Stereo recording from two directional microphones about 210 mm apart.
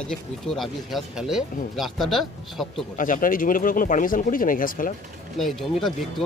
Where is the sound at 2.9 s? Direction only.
40° left (ahead or behind).